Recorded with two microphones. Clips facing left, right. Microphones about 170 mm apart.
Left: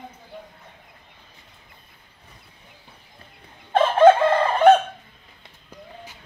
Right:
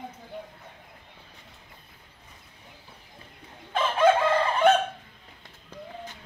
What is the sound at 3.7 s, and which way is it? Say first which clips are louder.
Chicken: left 7 dB; 50° left (ahead or behind).